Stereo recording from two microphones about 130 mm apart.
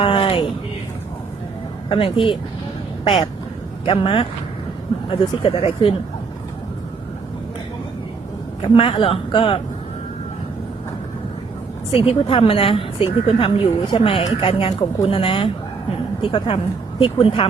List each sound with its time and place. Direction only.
0.0 s a sound: 45° left (ahead or behind)
1.9 s a woman's voice: 45° left (ahead or behind)
8.6 s a woman's voice: 45° left (ahead or behind)
11.9 s a woman's voice: 45° left (ahead or behind)